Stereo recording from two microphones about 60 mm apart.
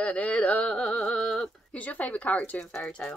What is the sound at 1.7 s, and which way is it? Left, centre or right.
Speech, left.